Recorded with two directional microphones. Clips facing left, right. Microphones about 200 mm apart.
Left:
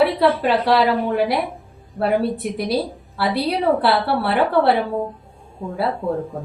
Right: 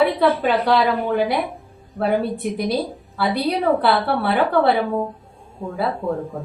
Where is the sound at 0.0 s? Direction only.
Centre (ahead or behind).